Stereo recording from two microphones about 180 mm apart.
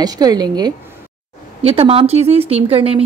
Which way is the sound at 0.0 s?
20° right (ahead or behind).